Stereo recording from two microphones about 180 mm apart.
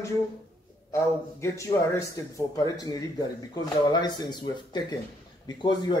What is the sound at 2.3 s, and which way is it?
Speech, 20° left (ahead or behind).